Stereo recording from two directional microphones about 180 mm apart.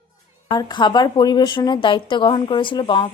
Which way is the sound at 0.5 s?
25° left (ahead or behind).